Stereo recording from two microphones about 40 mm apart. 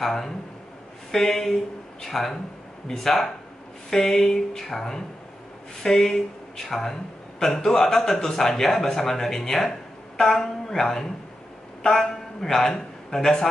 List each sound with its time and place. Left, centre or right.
0.0 s a man's voice: centre